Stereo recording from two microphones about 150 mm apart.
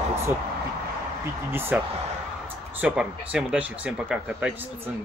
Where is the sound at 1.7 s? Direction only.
10° right (ahead or behind).